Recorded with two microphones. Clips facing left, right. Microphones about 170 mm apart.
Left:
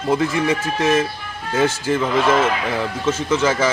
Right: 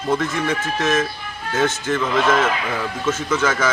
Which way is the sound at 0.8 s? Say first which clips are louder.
Left 3 dB; 30° left (ahead or behind).